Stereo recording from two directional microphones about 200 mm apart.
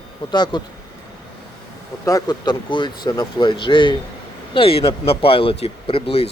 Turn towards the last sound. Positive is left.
turn(degrees=30)  # may be behind; listen again after turning